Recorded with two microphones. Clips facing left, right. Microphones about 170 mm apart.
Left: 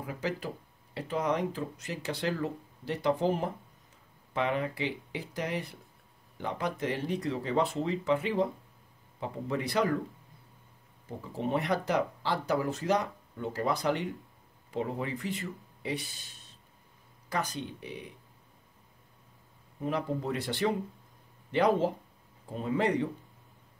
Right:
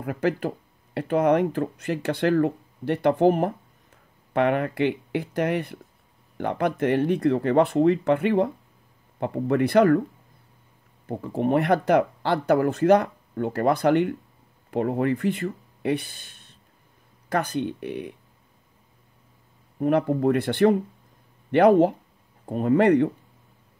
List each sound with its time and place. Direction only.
0.0 s speech: 60° right (ahead or behind)
11.1 s speech: 60° right (ahead or behind)
19.8 s speech: 60° right (ahead or behind)